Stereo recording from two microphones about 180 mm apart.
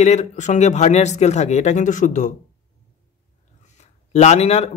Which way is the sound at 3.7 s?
35° left (ahead or behind).